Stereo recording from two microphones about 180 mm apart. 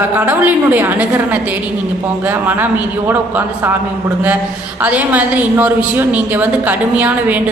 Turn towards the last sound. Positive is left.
turn(degrees=-10)  # may be behind; listen again after turning